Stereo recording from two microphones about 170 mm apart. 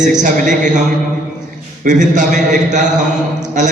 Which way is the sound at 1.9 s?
45° right (ahead or behind).